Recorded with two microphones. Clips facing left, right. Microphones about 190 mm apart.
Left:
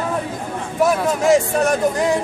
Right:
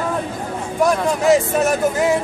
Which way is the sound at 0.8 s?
5° left (ahead or behind).